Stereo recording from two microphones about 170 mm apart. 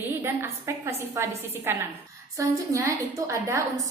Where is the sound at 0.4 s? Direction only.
15° right (ahead or behind).